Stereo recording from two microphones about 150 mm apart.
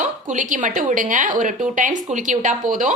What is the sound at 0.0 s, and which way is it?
A woman's voice, 55° right (ahead or behind).